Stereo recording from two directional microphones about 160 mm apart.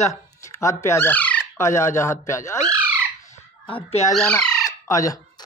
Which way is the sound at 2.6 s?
20° right (ahead or behind).